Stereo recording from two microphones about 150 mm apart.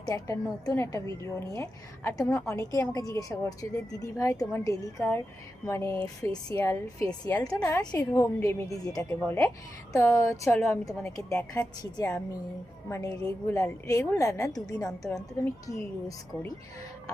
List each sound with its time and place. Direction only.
0.0 s a woman's voice: 25° left (ahead or behind)
9.0 s a woman's voice: 10° left (ahead or behind)